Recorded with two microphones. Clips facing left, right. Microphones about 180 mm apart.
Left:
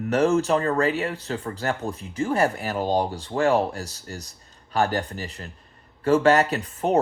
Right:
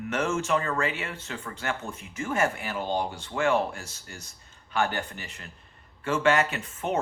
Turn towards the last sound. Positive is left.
turn(degrees=35)  # may be behind; listen again after turning